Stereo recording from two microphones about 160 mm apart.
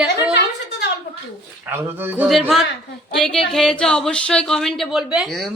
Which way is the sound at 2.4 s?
Centre (ahead or behind).